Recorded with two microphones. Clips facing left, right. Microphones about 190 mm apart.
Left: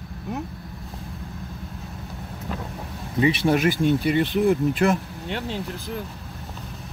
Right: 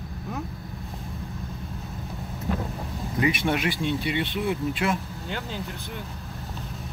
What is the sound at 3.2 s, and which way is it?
Speech, 30° left (ahead or behind).